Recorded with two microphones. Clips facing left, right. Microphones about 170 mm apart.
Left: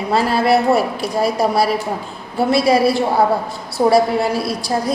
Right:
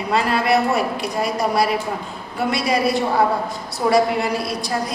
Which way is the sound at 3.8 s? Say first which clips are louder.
Left 5 dB; 40° left (ahead or behind).